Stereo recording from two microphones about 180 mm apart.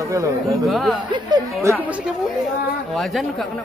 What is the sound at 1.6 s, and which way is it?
A woman's voice, 10° right (ahead or behind).